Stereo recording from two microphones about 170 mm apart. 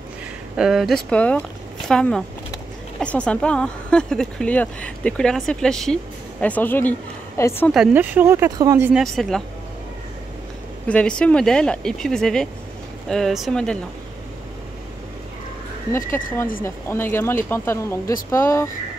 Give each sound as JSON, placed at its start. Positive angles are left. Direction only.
{"t": 0.6, "sound": "speech", "side_deg": 0}
{"t": 7.7, "sound": "speech", "side_deg": -5}
{"t": 8.9, "sound": "speech", "side_deg": 0}
{"t": 10.9, "sound": "speech", "side_deg": 5}
{"t": 16.6, "sound": "speech", "side_deg": 15}